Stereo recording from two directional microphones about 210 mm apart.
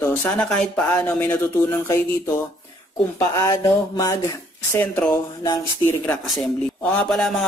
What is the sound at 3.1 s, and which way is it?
Speech, 15° left (ahead or behind).